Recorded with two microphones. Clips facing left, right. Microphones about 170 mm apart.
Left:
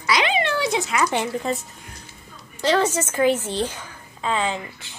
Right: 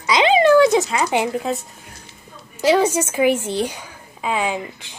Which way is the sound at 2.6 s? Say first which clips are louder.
Right 4 dB; 10° right (ahead or behind).